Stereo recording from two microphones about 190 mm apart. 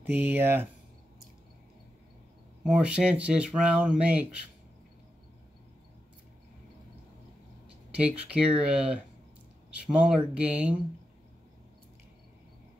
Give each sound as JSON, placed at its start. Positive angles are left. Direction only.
{"t": 0.0, "sound": "speech", "side_deg": -10}
{"t": 2.6, "sound": "speech", "side_deg": -5}
{"t": 7.9, "sound": "speech", "side_deg": -5}